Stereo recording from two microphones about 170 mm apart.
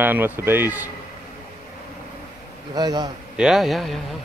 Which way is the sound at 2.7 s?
25° right (ahead or behind).